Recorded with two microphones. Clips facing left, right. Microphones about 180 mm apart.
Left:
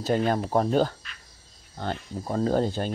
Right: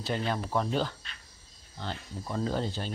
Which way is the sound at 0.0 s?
45° left (ahead or behind).